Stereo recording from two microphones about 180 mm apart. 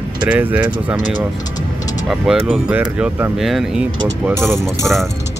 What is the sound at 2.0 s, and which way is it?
Speech, 5° right (ahead or behind).